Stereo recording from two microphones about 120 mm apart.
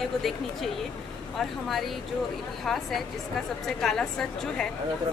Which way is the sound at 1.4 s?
Centre (ahead or behind).